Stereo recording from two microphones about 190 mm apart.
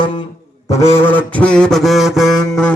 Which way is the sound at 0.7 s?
15° left (ahead or behind).